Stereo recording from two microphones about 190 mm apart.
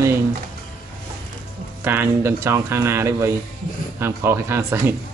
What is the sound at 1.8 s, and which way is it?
Speech, 10° right (ahead or behind).